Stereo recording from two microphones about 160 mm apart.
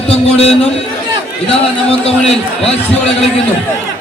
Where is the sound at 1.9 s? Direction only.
40° left (ahead or behind).